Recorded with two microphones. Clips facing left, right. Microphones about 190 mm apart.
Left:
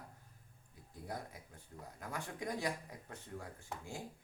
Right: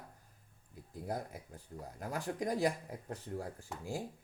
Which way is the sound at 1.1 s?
45° right (ahead or behind).